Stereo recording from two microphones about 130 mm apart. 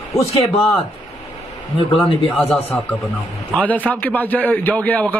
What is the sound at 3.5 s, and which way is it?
Speech, 10° left (ahead or behind).